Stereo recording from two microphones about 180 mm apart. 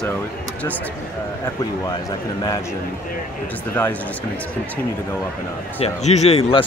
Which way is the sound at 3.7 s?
10° left (ahead or behind).